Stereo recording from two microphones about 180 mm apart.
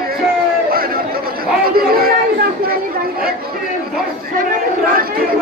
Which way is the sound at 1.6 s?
55° right (ahead or behind).